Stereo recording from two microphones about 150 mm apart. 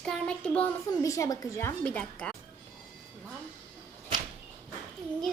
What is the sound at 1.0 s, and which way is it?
A woman's voice, 20° left (ahead or behind).